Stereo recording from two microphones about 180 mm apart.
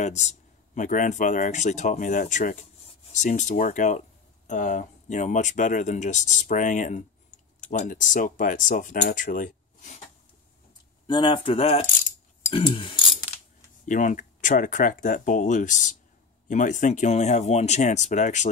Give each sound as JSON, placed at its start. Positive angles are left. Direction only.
{"t": 0.0, "sound": "speech", "side_deg": 40}
{"t": 11.1, "sound": "speech", "side_deg": 25}
{"t": 13.8, "sound": "speech", "side_deg": 45}